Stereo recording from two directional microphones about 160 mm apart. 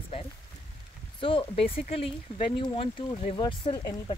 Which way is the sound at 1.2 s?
35° left (ahead or behind).